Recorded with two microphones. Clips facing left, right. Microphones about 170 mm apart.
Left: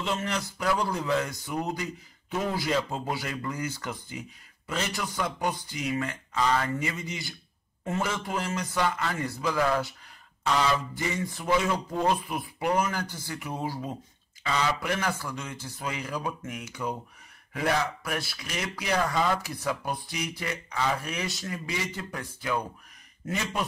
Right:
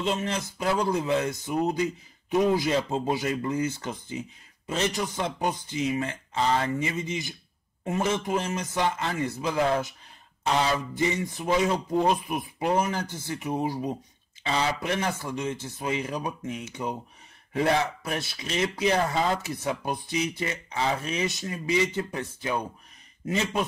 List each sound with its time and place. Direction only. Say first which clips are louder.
0.0 s speech: right 2 dB; 20° right (ahead or behind)
11.0 s speech: right 4 dB; 20° right (ahead or behind)